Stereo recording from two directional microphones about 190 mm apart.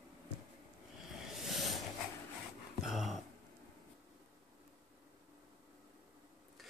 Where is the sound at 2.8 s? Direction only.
Centre (ahead or behind).